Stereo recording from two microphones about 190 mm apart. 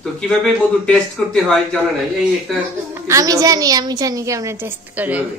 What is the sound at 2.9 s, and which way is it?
A woman's voice, 15° right (ahead or behind).